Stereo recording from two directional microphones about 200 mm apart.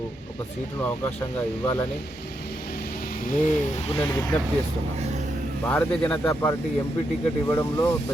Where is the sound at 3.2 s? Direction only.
35° left (ahead or behind).